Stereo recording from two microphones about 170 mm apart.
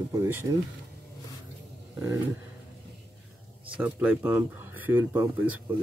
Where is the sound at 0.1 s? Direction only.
15° right (ahead or behind).